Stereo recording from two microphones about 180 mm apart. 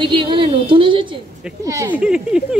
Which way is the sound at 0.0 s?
30° right (ahead or behind).